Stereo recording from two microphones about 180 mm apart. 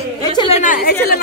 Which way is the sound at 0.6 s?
55° left (ahead or behind).